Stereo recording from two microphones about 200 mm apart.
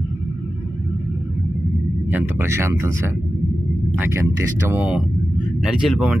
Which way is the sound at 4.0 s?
15° right (ahead or behind).